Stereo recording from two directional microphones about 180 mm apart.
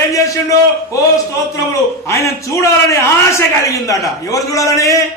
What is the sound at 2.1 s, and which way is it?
A man's voice, 15° left (ahead or behind).